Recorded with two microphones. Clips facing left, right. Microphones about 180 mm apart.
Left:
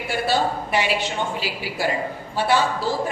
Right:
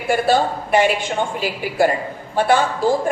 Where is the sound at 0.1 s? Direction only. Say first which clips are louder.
Right 5 dB; 50° right (ahead or behind).